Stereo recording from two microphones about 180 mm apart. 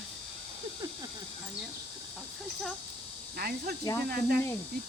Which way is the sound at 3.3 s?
55° right (ahead or behind).